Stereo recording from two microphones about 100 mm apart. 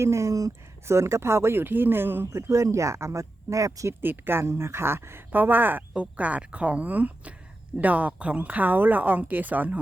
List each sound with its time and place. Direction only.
0.0 s speech: 30° right (ahead or behind)
4.0 s speech: 20° right (ahead or behind)